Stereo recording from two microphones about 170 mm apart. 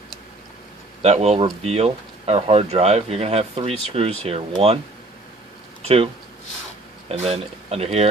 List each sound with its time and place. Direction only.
1.0 s speech: 40° right (ahead or behind)
5.8 s a sound: 35° right (ahead or behind)
7.1 s speech: 35° right (ahead or behind)